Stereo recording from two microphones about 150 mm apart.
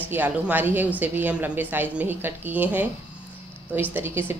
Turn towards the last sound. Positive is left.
turn(degrees=-15)  # may be behind; listen again after turning